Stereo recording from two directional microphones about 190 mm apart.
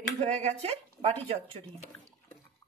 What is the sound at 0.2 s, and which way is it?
Speech, 35° right (ahead or behind).